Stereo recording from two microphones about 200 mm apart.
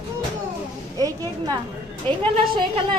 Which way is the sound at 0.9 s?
20° right (ahead or behind).